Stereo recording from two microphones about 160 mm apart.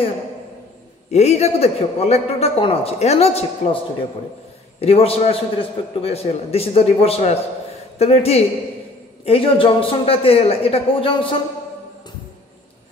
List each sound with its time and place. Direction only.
1.1 s a man's voice: 40° left (ahead or behind)